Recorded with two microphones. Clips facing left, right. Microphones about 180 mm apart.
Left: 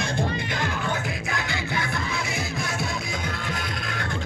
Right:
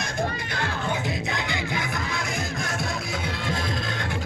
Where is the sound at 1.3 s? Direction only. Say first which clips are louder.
Even; 20° right (ahead or behind).